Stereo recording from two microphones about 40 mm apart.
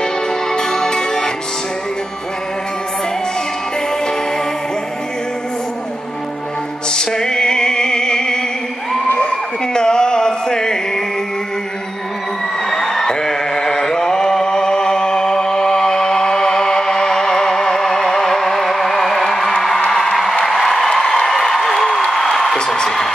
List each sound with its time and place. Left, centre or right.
0.0 s music: centre
6.9 s music: centre
9.8 s music: centre
12.6 s music: centre
13.1 s mantra: centre
19.9 s a sound: centre